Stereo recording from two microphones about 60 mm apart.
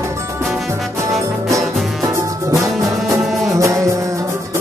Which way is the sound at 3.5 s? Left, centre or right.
Right.